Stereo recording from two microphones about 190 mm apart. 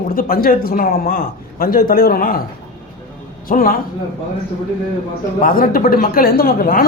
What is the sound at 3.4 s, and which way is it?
Speech, 50° left (ahead or behind).